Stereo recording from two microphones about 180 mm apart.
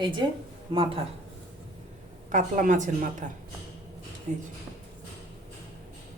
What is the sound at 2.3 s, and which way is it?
Speech, 45° right (ahead or behind).